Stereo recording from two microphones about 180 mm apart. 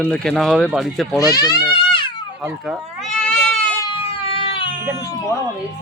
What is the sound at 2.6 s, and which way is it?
Cat, centre (ahead or behind).